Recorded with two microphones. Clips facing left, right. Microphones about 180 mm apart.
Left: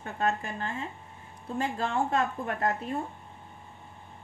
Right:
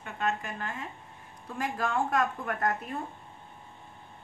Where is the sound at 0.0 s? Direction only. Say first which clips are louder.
Left 2 dB; 35° left (ahead or behind).